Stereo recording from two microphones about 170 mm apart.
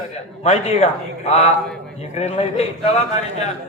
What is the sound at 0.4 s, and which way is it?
A man's voice, 40° left (ahead or behind).